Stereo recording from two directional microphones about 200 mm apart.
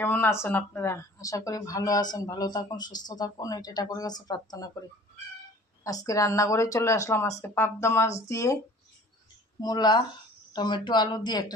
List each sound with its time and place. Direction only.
0.0 s a woman's voice: 10° left (ahead or behind)
5.9 s a woman's voice: 15° left (ahead or behind)
9.6 s speech: 20° left (ahead or behind)